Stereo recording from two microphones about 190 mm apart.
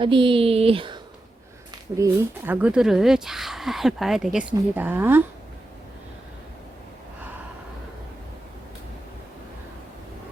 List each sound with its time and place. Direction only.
0.0 s speech: 25° right (ahead or behind)
1.7 s speech: 15° right (ahead or behind)